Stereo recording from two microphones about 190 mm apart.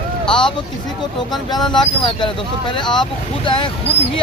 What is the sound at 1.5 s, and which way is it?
Speech, 20° left (ahead or behind).